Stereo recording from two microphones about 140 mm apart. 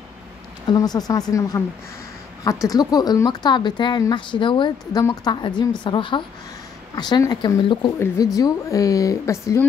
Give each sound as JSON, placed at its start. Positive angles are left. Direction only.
{"t": 0.7, "sound": "speech", "side_deg": 30}
{"t": 2.4, "sound": "speech", "side_deg": 25}